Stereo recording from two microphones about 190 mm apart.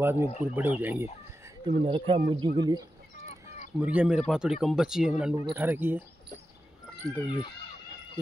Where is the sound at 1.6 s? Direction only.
25° right (ahead or behind).